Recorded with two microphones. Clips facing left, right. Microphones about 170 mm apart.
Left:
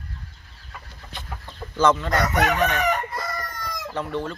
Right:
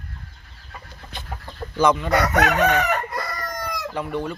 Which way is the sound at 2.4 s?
70° right (ahead or behind).